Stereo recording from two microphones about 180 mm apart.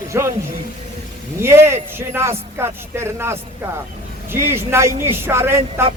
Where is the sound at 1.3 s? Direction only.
15° right (ahead or behind).